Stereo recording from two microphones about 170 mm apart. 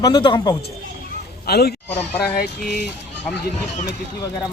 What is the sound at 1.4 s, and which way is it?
Speech, 65° left (ahead or behind).